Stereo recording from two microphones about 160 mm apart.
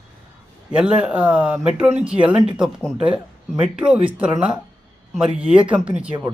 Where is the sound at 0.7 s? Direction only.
5° right (ahead or behind).